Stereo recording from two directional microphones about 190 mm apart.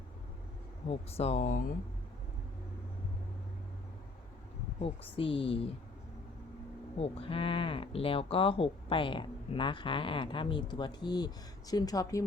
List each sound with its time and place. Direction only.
0.9 s speech: 35° left (ahead or behind)
5.1 s speech: 30° left (ahead or behind)
7.0 s speech: 30° left (ahead or behind)